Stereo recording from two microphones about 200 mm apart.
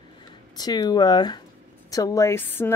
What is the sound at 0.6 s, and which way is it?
Speech, 20° left (ahead or behind).